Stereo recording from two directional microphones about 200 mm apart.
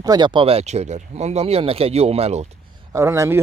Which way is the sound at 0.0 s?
20° right (ahead or behind).